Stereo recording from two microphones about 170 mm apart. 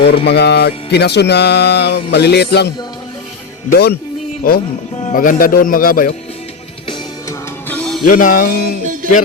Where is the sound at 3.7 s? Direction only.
70° left (ahead or behind).